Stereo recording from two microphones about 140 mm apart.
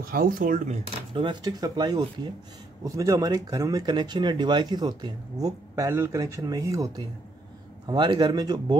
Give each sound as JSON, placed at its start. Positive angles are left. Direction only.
{"t": 0.1, "sound": "speech", "side_deg": -90}
{"t": 1.1, "sound": "speech", "side_deg": -35}